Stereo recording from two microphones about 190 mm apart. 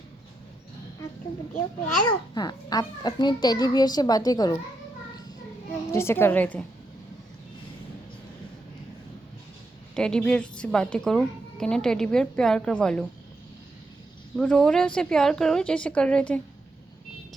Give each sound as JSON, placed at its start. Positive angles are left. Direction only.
{"t": 2.3, "sound": "a child's voice", "side_deg": 20}
{"t": 5.9, "sound": "a woman's voice", "side_deg": 15}
{"t": 9.9, "sound": "a woman's voice", "side_deg": 5}
{"t": 14.3, "sound": "a woman's voice", "side_deg": 5}